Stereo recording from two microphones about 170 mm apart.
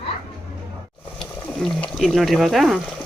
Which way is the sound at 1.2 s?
5° left (ahead or behind).